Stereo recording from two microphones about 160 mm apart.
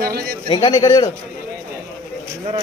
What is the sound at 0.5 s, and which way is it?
Speech, 25° left (ahead or behind).